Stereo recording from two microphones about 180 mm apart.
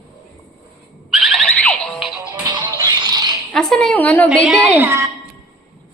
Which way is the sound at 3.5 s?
5° left (ahead or behind).